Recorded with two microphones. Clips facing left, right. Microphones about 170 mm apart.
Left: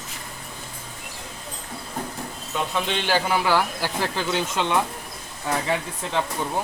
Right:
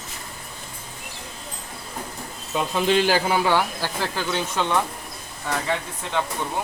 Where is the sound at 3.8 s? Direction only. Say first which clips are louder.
Left 1 dB; 15° left (ahead or behind).